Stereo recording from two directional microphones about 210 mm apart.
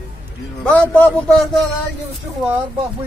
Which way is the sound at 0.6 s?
5° left (ahead or behind).